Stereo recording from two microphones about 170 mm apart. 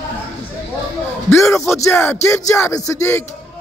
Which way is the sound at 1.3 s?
15° left (ahead or behind).